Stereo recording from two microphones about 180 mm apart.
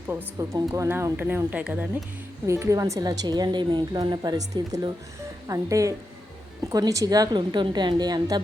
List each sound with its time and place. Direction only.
0.1 s a woman's voice: 15° right (ahead or behind)